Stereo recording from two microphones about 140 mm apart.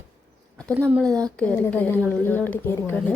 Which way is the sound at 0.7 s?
15° right (ahead or behind).